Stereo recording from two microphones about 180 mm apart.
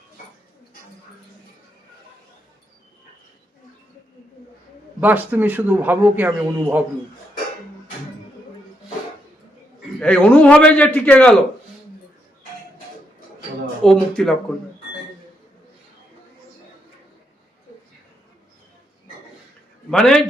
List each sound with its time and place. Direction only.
4.9 s speech: 10° right (ahead or behind)
10.0 s a man's voice: 10° left (ahead or behind)
13.8 s speech: 5° left (ahead or behind)
19.9 s speech: 5° left (ahead or behind)